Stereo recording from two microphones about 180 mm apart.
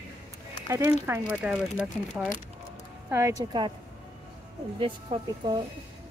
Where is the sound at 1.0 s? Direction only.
10° right (ahead or behind).